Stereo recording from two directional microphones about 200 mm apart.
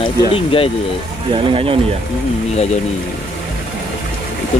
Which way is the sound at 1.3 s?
25° right (ahead or behind).